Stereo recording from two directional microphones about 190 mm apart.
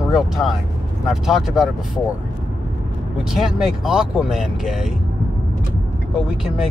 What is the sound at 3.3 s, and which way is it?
Speech, centre (ahead or behind).